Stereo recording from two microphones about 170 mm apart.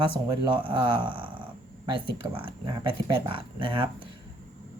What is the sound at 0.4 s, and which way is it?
Speech, 30° right (ahead or behind).